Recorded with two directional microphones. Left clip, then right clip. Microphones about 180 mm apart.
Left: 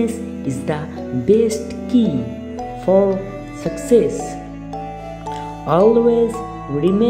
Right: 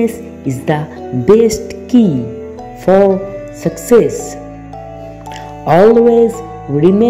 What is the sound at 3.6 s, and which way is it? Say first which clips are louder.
Music: right 5 dB; 20° right (ahead or behind).